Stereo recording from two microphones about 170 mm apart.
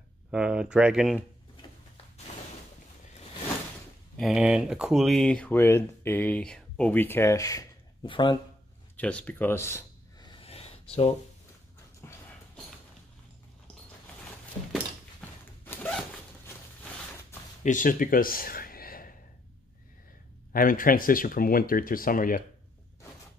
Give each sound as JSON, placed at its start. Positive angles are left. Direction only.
{"t": 0.3, "sound": "speech", "side_deg": -5}
{"t": 2.3, "sound": "a sound", "side_deg": 40}
{"t": 4.2, "sound": "speech", "side_deg": -5}
{"t": 8.9, "sound": "speech", "side_deg": 10}
{"t": 10.2, "sound": "a sound", "side_deg": 30}
{"t": 12.0, "sound": "dog", "side_deg": 15}
{"t": 14.2, "sound": "zipper", "side_deg": 10}
{"t": 17.6, "sound": "speech", "side_deg": 50}
{"t": 20.5, "sound": "speech", "side_deg": 55}